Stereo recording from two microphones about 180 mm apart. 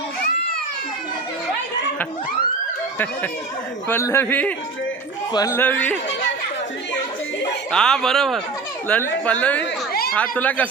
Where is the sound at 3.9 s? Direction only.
15° left (ahead or behind).